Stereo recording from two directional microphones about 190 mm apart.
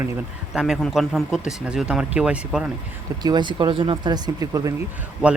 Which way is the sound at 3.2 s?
20° right (ahead or behind).